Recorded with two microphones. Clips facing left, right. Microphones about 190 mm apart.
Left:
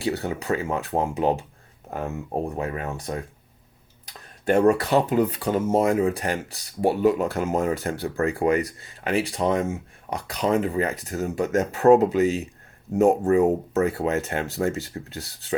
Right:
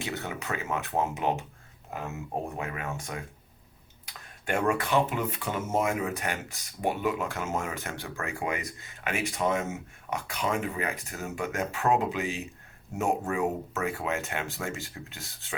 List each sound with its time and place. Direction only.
0.0 s speech: 35° left (ahead or behind)
2.6 s speech: 35° left (ahead or behind)